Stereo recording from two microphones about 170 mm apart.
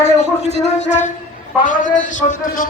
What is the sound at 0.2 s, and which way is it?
A man's voice, 40° left (ahead or behind).